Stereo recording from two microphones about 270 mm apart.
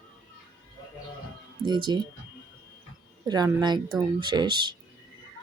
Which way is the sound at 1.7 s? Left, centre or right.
Centre.